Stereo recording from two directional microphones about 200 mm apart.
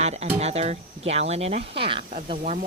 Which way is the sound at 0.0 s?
30° right (ahead or behind).